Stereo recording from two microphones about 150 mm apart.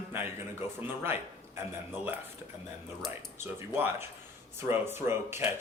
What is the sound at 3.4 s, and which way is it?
Speech, 15° right (ahead or behind).